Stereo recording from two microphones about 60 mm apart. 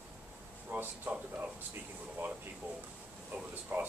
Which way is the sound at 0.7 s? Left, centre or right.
Right.